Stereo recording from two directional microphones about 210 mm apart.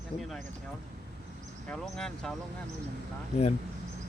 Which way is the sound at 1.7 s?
5° left (ahead or behind).